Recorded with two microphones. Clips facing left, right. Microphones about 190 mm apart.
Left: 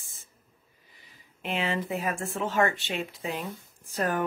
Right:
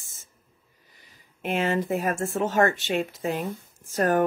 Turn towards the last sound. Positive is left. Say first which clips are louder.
# right 6 dB
turn(degrees=-45)  # may be behind; listen again after turning